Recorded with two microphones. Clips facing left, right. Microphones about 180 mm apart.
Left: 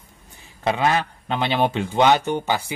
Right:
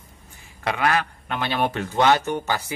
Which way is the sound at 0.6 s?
25° left (ahead or behind).